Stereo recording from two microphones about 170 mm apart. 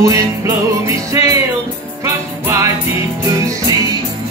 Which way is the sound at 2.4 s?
20° right (ahead or behind).